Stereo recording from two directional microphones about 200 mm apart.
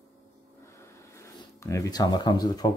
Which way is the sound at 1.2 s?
15° left (ahead or behind).